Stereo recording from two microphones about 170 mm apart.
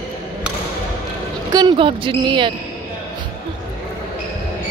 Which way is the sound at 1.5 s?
25° right (ahead or behind).